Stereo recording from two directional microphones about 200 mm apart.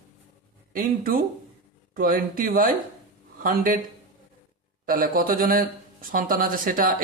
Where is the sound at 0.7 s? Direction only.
45° right (ahead or behind).